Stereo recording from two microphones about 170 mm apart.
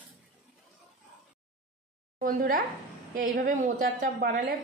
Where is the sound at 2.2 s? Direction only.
55° right (ahead or behind).